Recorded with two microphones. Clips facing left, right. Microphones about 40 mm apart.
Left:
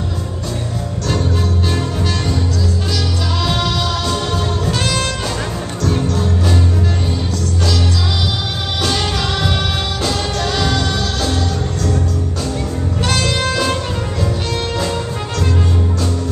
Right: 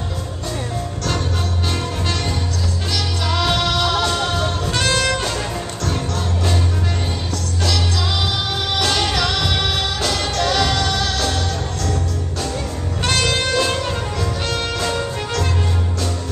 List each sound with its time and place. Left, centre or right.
2.9 s music: right
10.4 s music: right
13.4 s music: centre